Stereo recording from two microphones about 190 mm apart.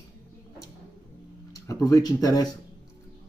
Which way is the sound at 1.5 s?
15° left (ahead or behind).